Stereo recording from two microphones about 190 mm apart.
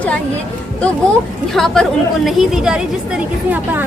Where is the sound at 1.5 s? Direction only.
Centre (ahead or behind).